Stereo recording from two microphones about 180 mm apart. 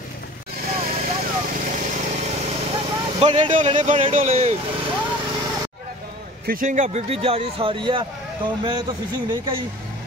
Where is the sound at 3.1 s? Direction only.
30° right (ahead or behind).